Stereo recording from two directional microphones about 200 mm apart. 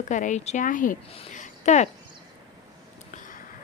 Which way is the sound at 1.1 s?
35° left (ahead or behind).